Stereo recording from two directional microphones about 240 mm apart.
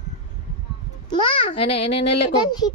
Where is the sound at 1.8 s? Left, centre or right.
Left.